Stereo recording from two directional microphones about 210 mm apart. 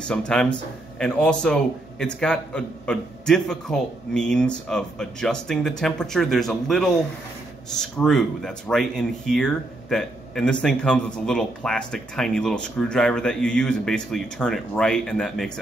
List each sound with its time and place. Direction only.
0.0 s speech: 5° left (ahead or behind)